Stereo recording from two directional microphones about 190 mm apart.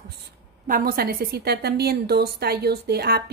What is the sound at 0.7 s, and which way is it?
A woman's voice, 50° right (ahead or behind).